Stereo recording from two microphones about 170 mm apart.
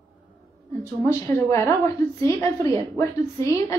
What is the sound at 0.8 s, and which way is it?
A woman's voice, 15° left (ahead or behind).